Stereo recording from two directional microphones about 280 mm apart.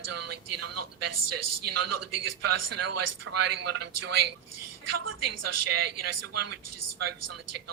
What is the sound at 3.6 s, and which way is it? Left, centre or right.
A woman's voice, right.